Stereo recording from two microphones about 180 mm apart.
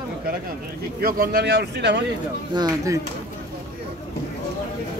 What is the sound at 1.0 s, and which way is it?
Speech, 55° right (ahead or behind).